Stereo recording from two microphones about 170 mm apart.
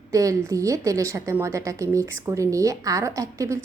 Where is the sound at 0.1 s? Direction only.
20° right (ahead or behind).